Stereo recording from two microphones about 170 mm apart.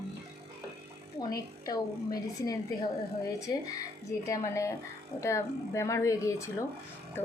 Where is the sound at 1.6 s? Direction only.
20° left (ahead or behind).